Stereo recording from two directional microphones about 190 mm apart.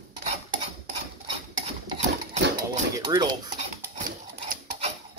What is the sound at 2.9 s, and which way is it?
Speech, 20° right (ahead or behind).